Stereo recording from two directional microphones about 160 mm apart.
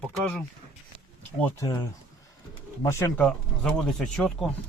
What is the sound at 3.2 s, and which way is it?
Speech, 5° left (ahead or behind).